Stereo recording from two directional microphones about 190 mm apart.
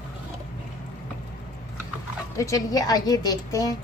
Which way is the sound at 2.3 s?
15° left (ahead or behind).